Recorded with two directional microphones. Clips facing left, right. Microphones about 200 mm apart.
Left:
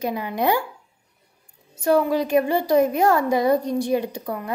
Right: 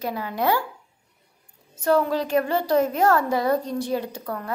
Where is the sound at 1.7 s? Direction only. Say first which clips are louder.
Left 2 dB; 15° left (ahead or behind).